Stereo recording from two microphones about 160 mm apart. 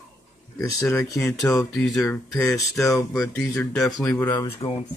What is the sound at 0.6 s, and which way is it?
Speech, 20° left (ahead or behind).